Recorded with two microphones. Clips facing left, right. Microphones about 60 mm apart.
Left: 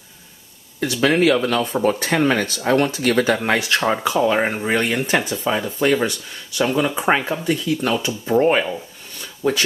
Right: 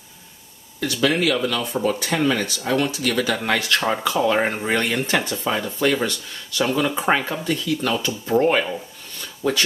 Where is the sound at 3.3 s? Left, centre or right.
Left.